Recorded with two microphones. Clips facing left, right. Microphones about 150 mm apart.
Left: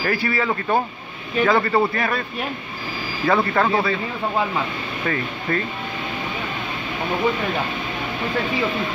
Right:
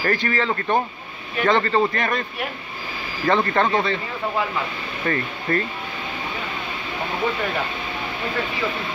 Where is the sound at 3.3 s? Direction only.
5° left (ahead or behind).